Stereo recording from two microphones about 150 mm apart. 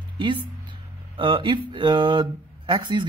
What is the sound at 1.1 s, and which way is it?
Speech, 35° right (ahead or behind).